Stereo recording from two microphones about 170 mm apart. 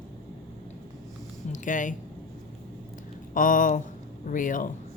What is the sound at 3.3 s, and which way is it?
Speech, 50° left (ahead or behind).